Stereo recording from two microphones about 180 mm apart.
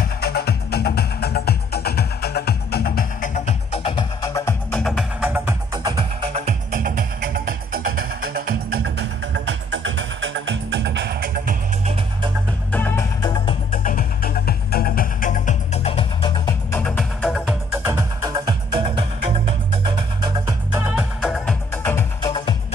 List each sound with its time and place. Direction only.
0.0 s music: 60° left (ahead or behind)
3.7 s music: 30° left (ahead or behind)
4.6 s music: 5° left (ahead or behind)
5.2 s music: 10° right (ahead or behind); by 11.1 s 75° right (ahead or behind)
11.2 s music: 50° right (ahead or behind)
12.7 s music: 10° left (ahead or behind)
13.7 s music: 50° left (ahead or behind); by 16.8 s 20° left (ahead or behind)
16.8 s music: 5° left (ahead or behind)
17.8 s music: 20° right (ahead or behind)
20.9 s music: centre (ahead or behind)
21.8 s music: 10° left (ahead or behind)
22.3 s music: 25° left (ahead or behind)